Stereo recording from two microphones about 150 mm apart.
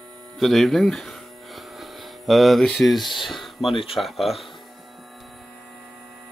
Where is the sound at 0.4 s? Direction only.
Centre (ahead or behind).